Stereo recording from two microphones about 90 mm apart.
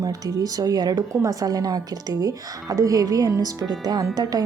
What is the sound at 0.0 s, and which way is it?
A woman's voice, 40° right (ahead or behind).